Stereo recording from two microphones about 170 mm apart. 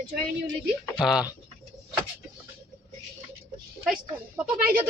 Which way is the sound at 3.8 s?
5° right (ahead or behind).